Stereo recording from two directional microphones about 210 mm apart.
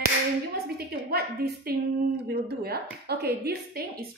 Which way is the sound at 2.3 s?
50° right (ahead or behind).